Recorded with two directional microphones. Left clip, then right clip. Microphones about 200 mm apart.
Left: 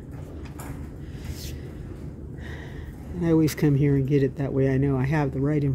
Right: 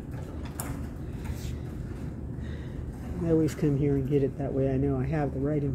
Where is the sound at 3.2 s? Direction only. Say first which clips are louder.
Left 4 dB; 50° left (ahead or behind).